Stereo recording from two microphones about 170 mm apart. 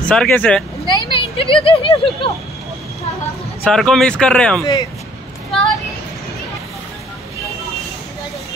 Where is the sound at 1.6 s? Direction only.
30° left (ahead or behind).